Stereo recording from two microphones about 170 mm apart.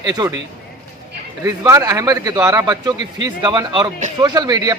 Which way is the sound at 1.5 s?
20° right (ahead or behind).